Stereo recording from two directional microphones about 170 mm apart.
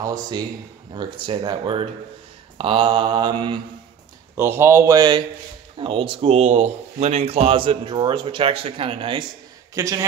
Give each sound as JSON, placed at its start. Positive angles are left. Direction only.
{"t": 1.2, "sound": "mantra", "side_deg": -25}
{"t": 4.4, "sound": "speech", "side_deg": -15}
{"t": 9.8, "sound": "mantra", "side_deg": -20}